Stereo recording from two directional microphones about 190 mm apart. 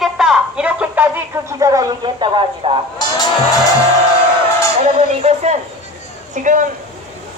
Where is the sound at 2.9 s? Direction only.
20° left (ahead or behind).